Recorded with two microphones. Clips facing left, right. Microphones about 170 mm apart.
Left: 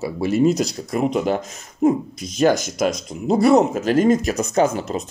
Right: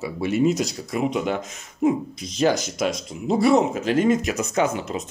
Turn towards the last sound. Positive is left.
turn(degrees=35)  # may be behind; listen again after turning